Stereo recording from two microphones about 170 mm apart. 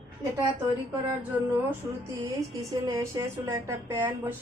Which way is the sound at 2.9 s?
15° right (ahead or behind).